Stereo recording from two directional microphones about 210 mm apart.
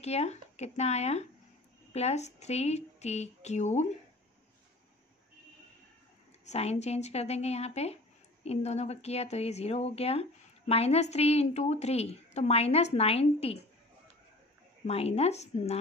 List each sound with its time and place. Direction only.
0.0 s speech: 30° left (ahead or behind)
6.4 s a woman's voice: 30° left (ahead or behind)
14.9 s a woman's voice: 30° left (ahead or behind)